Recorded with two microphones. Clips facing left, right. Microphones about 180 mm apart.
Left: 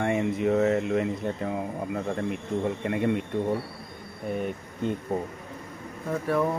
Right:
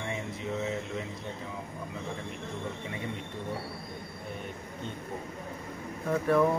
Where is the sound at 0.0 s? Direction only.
65° left (ahead or behind).